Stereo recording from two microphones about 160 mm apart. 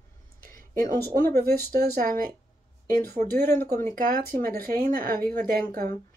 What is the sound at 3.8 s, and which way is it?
Speech, 60° right (ahead or behind).